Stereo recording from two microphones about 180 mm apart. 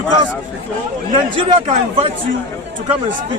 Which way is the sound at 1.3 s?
30° right (ahead or behind).